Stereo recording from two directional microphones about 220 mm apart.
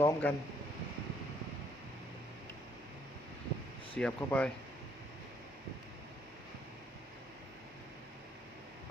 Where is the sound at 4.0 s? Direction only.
5° left (ahead or behind).